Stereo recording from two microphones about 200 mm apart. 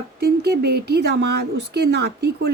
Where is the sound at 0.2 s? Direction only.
50° right (ahead or behind).